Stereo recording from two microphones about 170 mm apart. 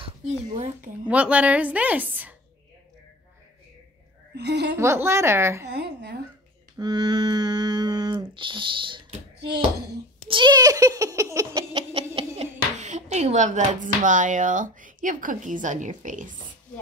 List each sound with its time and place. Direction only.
0.0 s speech: 40° right (ahead or behind)
1.0 s a woman's voice: 10° right (ahead or behind)
4.4 s a woman's voice: 80° right
4.7 s a woman's voice: 15° right (ahead or behind)
5.7 s a woman's voice: 80° right
6.8 s humming: 25° right (ahead or behind)
10.2 s humming: 30° right (ahead or behind)
11.9 s speech: 35° right (ahead or behind)